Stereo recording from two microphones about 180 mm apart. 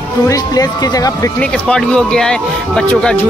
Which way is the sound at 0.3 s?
20° left (ahead or behind).